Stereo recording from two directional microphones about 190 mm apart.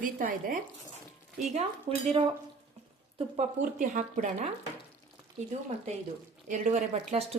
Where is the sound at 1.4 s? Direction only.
35° right (ahead or behind).